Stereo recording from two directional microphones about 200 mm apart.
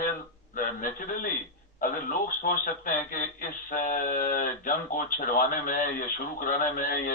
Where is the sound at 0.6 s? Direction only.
45° left (ahead or behind).